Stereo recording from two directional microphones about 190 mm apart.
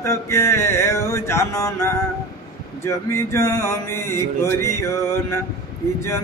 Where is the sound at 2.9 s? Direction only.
15° left (ahead or behind).